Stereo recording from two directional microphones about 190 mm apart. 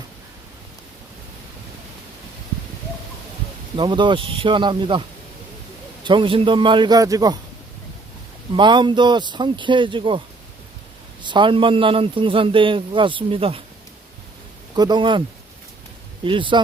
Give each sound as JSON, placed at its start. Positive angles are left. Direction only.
{"t": 3.8, "sound": "a man's voice", "side_deg": -25}
{"t": 8.5, "sound": "a man's voice", "side_deg": -25}
{"t": 14.8, "sound": "a man's voice", "side_deg": -20}
{"t": 16.2, "sound": "a man's voice", "side_deg": -25}